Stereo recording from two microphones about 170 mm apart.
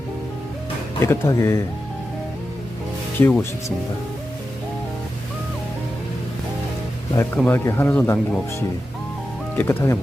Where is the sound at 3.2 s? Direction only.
10° left (ahead or behind).